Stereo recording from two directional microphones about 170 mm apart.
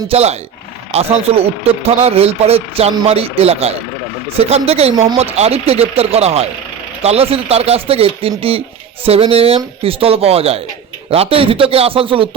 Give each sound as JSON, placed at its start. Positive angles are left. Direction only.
{"t": 0.1, "sound": "speech", "side_deg": -40}